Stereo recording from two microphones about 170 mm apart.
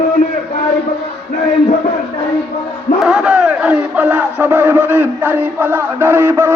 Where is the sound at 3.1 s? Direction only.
5° right (ahead or behind).